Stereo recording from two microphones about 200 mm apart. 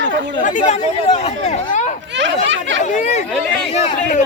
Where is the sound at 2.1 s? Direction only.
65° right (ahead or behind).